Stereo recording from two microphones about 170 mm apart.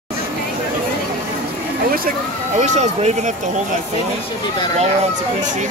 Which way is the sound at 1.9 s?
50° right (ahead or behind).